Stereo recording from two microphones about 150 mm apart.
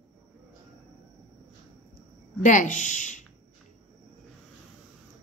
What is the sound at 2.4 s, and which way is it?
Speech, 55° left (ahead or behind).